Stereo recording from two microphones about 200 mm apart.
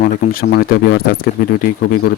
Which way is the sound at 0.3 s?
50° left (ahead or behind).